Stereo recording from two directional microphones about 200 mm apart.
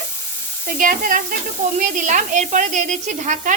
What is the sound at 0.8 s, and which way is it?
A woman's voice, 45° right (ahead or behind).